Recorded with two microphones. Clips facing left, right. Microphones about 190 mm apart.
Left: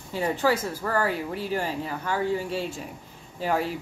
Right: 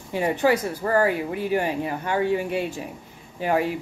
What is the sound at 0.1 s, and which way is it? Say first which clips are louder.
Speech: right 3 dB; 15° right (ahead or behind).